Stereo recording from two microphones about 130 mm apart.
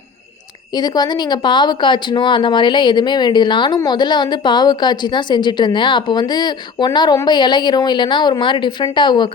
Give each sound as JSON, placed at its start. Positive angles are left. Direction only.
{"t": 0.7, "sound": "a woman's voice", "side_deg": 30}